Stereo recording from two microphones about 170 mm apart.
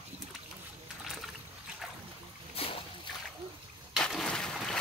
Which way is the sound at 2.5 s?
35° left (ahead or behind).